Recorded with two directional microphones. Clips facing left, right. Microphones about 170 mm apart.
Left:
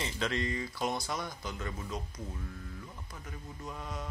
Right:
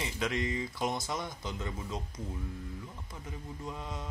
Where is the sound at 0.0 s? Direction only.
15° right (ahead or behind).